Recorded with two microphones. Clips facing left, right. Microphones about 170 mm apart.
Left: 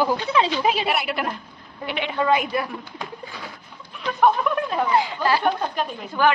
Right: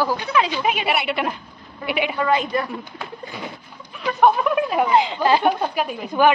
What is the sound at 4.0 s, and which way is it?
Speech, 5° right (ahead or behind).